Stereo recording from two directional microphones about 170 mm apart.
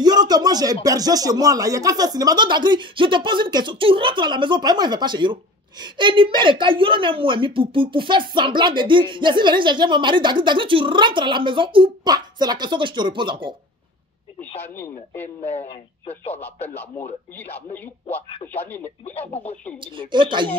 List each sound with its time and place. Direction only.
0.0 s a sound: 25° right (ahead or behind)
0.8 s speech: 20° right (ahead or behind)
14.6 s speech: 10° left (ahead or behind)
15.5 s speech: 40° left (ahead or behind)
18.5 s speech: 10° left (ahead or behind)
20.0 s speech: 30° right (ahead or behind)